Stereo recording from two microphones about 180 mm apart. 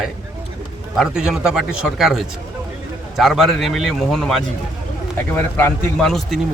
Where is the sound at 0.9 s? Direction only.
5° right (ahead or behind).